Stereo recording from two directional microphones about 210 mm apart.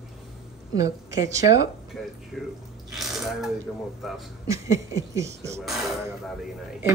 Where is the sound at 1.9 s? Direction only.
Centre (ahead or behind).